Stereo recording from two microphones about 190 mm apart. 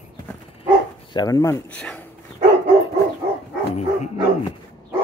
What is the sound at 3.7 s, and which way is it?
Speech, 35° left (ahead or behind).